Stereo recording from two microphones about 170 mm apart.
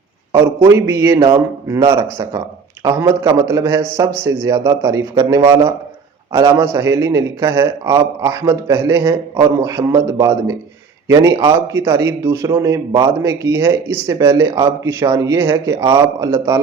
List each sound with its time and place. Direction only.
0.3 s a man's voice: 15° right (ahead or behind)